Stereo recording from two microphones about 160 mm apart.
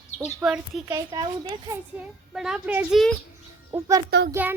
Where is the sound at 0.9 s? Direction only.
20° right (ahead or behind).